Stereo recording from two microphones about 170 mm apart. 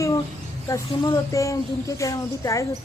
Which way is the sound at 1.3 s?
20° left (ahead or behind).